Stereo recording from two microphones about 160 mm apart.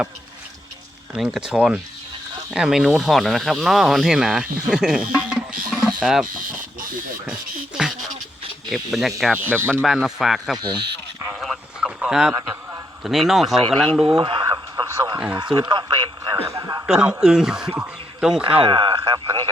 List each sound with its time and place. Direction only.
1.1 s speech: 5° right (ahead or behind)
5.1 s music: 5° right (ahead or behind)
6.0 s speech: 5° right (ahead or behind)
7.8 s a sound: 5° right (ahead or behind)
8.7 s speech: centre (ahead or behind)
9.4 s speech: 10° right (ahead or behind)
9.8 s speech: centre (ahead or behind)
10.6 s a sound: 25° right (ahead or behind)
11.3 s a sound: centre (ahead or behind)
12.3 s a sound: 15° right (ahead or behind)
13.0 s speech: centre (ahead or behind)
14.2 s radio: 30° right (ahead or behind)
16.8 s speech: 5° right (ahead or behind)
18.6 s radio: 30° right (ahead or behind)